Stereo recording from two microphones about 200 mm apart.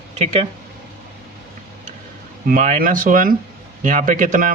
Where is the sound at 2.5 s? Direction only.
40° right (ahead or behind).